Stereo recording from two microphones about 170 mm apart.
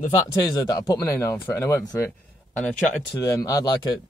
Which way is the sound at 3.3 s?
20° left (ahead or behind).